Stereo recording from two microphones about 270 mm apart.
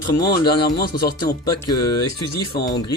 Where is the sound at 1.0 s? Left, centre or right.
Left.